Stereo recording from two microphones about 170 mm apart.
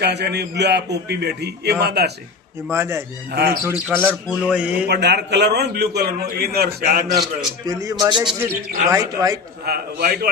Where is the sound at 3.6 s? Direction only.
15° right (ahead or behind).